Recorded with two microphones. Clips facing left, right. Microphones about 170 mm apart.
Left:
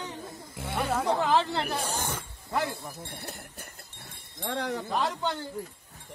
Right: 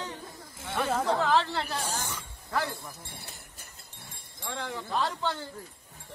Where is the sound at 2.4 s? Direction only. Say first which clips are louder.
Left 1 dB; 20° left (ahead or behind).